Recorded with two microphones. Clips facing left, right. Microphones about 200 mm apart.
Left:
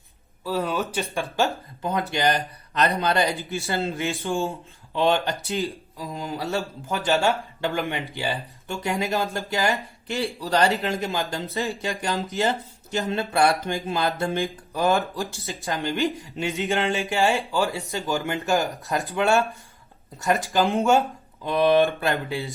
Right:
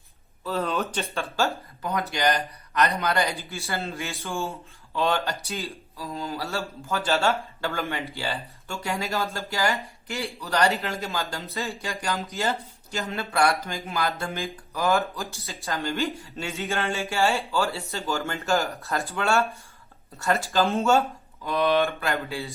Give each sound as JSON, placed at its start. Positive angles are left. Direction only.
{"t": 0.4, "sound": "speech", "side_deg": 10}
{"t": 1.9, "sound": "speech", "side_deg": 25}
{"t": 10.1, "sound": "a man's voice", "side_deg": 30}
{"t": 13.1, "sound": "a man's voice", "side_deg": 30}
{"t": 15.6, "sound": "speech", "side_deg": 15}
{"t": 22.1, "sound": "speech", "side_deg": 20}